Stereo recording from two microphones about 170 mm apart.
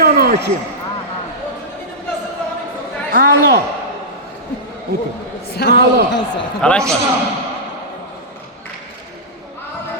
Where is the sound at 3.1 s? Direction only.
60° right (ahead or behind).